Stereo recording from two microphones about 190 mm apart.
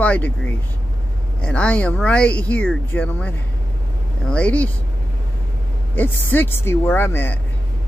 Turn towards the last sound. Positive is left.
turn(degrees=10)  # may be behind; listen again after turning